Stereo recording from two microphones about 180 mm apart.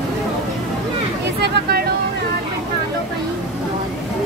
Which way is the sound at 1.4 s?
60° right (ahead or behind).